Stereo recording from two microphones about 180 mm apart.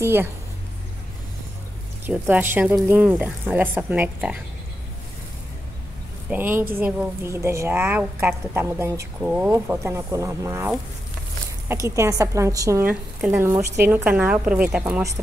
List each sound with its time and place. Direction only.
0.0 s speech: 15° right (ahead or behind)
2.0 s speech: 10° right (ahead or behind)
6.3 s speech: 10° right (ahead or behind)
11.7 s speech: 15° right (ahead or behind)